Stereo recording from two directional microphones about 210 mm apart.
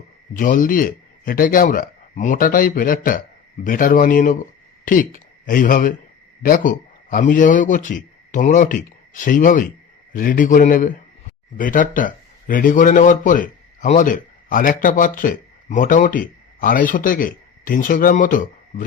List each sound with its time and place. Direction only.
0.3 s a man's voice: 40° left (ahead or behind)